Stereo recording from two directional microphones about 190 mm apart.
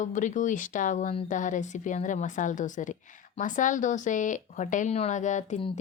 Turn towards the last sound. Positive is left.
turn(degrees=35)  # may be behind; listen again after turning